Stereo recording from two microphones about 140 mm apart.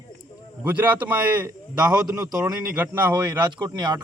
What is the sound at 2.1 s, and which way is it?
Speech, 25° right (ahead or behind).